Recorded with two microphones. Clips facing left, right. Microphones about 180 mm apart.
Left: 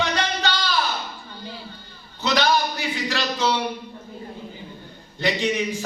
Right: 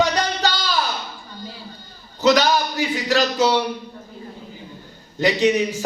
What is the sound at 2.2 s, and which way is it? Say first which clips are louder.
A man's voice: right 4 dB; 40° right (ahead or behind).